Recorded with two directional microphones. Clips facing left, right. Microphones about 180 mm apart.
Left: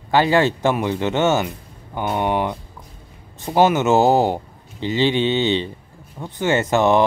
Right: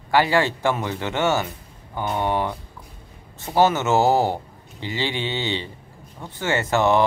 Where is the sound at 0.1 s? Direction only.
20° left (ahead or behind).